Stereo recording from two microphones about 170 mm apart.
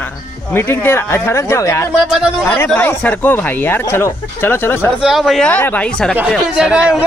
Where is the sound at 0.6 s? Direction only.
15° left (ahead or behind).